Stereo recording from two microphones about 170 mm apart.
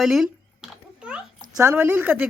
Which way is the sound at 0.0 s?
Centre (ahead or behind).